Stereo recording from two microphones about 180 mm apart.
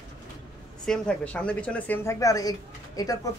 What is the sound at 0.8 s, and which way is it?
Speech, 5° left (ahead or behind).